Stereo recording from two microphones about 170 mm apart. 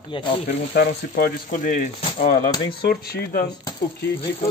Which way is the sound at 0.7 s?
65° left (ahead or behind).